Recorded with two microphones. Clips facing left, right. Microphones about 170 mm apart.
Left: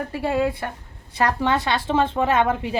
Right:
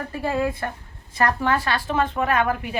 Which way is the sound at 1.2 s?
20° left (ahead or behind).